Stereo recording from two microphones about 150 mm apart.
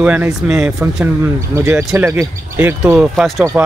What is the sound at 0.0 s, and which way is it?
Speech, 10° right (ahead or behind).